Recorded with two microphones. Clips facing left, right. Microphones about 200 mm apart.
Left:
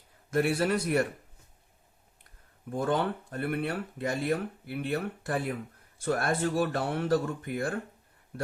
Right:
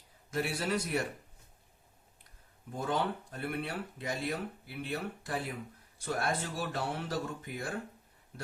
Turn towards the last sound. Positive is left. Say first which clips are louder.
# left 9 dB
turn(degrees=55)  # may be behind; listen again after turning